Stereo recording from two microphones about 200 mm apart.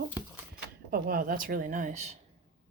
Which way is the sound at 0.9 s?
45° right (ahead or behind).